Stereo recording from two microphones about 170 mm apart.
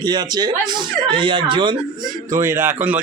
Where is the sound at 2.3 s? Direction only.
15° right (ahead or behind).